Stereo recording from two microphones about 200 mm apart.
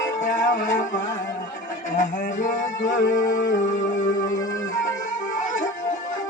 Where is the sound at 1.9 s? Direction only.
40° left (ahead or behind).